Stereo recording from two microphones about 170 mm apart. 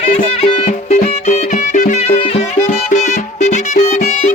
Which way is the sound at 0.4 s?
40° left (ahead or behind).